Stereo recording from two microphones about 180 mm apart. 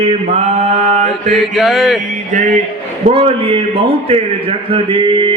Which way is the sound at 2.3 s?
40° right (ahead or behind).